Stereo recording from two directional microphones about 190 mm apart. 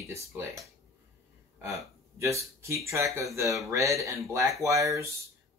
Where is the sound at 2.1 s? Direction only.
15° right (ahead or behind).